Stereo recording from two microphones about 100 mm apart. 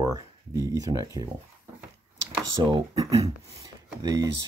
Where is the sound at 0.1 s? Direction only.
35° right (ahead or behind).